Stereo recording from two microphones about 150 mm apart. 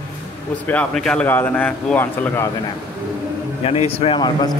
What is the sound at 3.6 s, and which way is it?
Speech, 40° left (ahead or behind).